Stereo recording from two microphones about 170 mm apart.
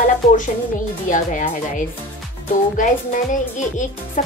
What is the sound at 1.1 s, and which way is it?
A child's voice, 50° left (ahead or behind).